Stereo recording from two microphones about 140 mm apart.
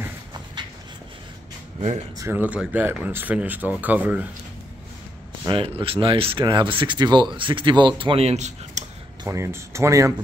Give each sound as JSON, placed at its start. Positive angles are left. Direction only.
{"t": 1.8, "sound": "speech", "side_deg": -55}
{"t": 2.1, "sound": "speech", "side_deg": -15}
{"t": 5.5, "sound": "speech", "side_deg": -40}
{"t": 9.2, "sound": "speech", "side_deg": -20}